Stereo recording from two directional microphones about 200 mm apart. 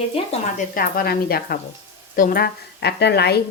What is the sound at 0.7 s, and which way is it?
A woman's voice, 45° left (ahead or behind).